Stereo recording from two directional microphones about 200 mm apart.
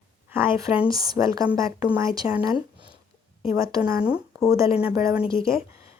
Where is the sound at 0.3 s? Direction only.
10° right (ahead or behind).